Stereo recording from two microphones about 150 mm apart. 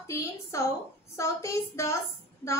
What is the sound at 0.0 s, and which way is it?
A woman's voice, 20° left (ahead or behind).